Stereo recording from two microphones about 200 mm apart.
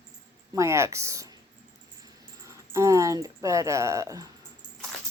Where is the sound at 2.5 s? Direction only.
15° right (ahead or behind).